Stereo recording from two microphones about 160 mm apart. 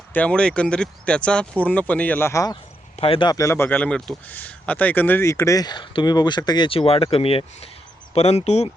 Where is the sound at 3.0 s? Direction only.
35° left (ahead or behind).